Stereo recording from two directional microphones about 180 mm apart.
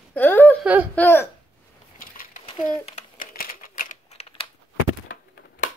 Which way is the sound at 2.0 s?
50° left (ahead or behind).